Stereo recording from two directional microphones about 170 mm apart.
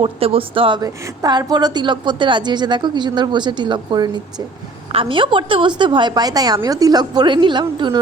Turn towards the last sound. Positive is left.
turn(degrees=-25)  # may be behind; listen again after turning